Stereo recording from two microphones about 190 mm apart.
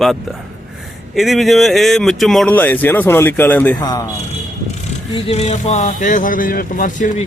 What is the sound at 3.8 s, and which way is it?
Speech, 20° left (ahead or behind).